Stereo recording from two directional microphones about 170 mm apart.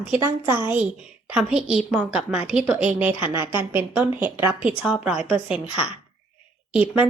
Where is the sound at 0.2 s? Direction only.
15° right (ahead or behind).